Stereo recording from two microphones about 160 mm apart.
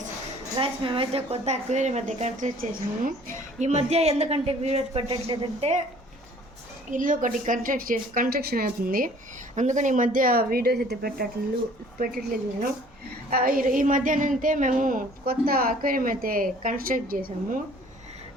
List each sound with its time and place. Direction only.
0.5 s a woman's voice: 35° right (ahead or behind)
5.0 s speech: 30° right (ahead or behind)
5.5 s a woman's voice: 40° right (ahead or behind)
6.9 s speech: 55° right (ahead or behind)
9.6 s speech: 50° right (ahead or behind); by 11.3 s 80° right
11.9 s speech: 65° right (ahead or behind)
13.3 s speech: 65° right (ahead or behind)